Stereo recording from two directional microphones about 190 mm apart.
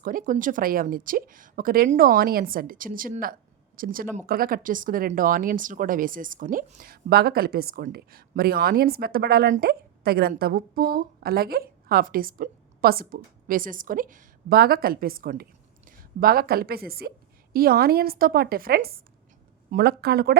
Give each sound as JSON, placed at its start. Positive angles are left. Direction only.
{"t": 0.0, "sound": "a woman's voice", "side_deg": -45}